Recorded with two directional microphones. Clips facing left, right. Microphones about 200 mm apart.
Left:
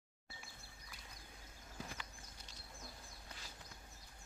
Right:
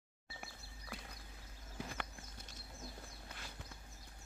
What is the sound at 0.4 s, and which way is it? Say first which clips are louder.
Music: right 6 dB; 60° right (ahead or behind).